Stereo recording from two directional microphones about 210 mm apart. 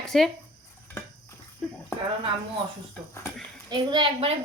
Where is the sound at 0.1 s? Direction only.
Centre (ahead or behind).